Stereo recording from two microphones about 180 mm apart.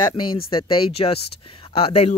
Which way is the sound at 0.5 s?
30° left (ahead or behind).